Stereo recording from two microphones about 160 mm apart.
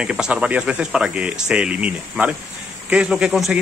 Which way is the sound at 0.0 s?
5° right (ahead or behind).